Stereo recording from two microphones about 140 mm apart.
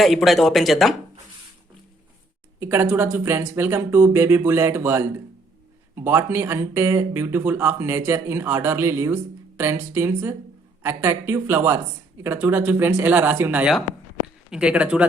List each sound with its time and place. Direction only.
0.0 s speech: centre (ahead or behind)
2.6 s speech: 20° right (ahead or behind)